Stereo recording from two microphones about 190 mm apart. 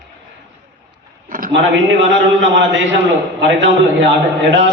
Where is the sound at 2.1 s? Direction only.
75° right (ahead or behind).